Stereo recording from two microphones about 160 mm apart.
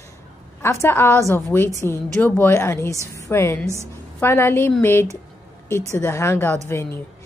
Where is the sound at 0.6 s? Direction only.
15° left (ahead or behind).